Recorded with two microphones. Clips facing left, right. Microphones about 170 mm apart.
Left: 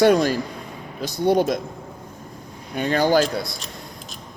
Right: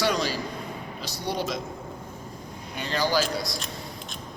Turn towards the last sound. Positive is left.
turn(degrees=55)  # may be behind; listen again after turning